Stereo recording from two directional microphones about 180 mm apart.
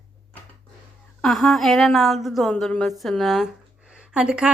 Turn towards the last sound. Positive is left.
turn(degrees=-5)  # may be behind; listen again after turning